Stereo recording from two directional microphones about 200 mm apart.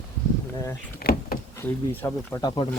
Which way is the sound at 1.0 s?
50° left (ahead or behind).